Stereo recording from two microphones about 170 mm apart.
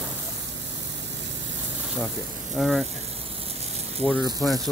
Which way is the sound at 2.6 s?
Centre (ahead or behind).